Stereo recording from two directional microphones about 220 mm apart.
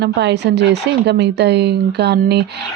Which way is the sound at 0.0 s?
50° right (ahead or behind).